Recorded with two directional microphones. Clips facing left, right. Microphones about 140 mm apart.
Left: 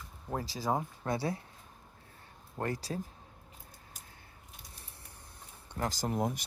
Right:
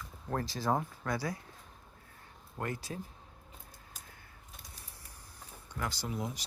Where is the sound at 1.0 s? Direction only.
25° left (ahead or behind).